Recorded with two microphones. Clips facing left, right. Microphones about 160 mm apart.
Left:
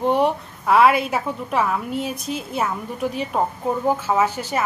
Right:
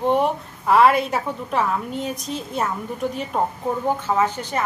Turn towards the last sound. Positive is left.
turn(degrees=10)  # may be behind; listen again after turning